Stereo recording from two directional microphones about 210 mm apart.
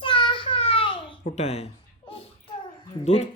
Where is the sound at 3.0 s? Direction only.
30° left (ahead or behind).